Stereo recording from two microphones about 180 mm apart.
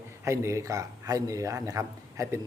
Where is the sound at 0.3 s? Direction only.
15° right (ahead or behind).